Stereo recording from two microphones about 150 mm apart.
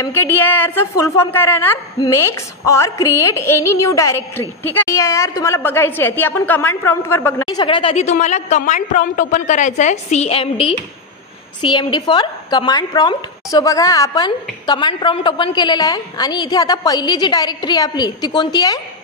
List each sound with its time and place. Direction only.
0.0 s a woman's voice: 15° left (ahead or behind)
7.4 s a woman's voice: 30° left (ahead or behind)